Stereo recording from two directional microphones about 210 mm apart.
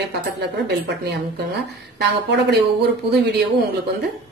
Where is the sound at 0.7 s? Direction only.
50° right (ahead or behind).